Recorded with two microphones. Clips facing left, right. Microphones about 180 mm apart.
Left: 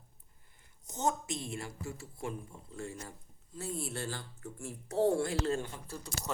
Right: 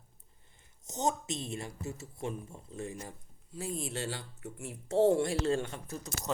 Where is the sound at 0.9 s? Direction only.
20° right (ahead or behind).